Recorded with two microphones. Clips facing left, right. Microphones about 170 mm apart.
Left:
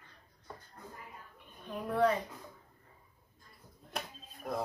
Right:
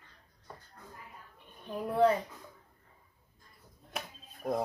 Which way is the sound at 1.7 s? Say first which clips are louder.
Right 3 dB; 30° right (ahead or behind).